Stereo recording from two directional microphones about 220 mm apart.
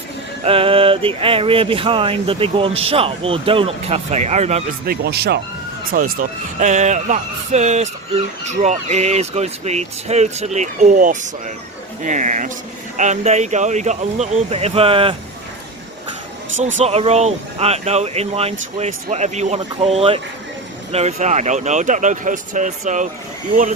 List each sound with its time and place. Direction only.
0.4 s speech: 25° right (ahead or behind)
4.9 s speech: 45° right (ahead or behind); by 15.1 s 25° right (ahead or behind)
16.7 s speech: 30° right (ahead or behind)